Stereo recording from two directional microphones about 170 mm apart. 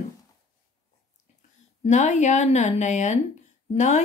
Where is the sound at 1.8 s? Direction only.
45° left (ahead or behind).